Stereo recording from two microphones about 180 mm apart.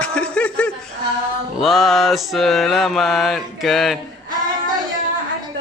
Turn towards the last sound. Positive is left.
turn(degrees=0)  # may be behind; listen again after turning